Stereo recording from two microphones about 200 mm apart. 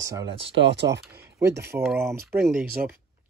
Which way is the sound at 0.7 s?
60° right (ahead or behind).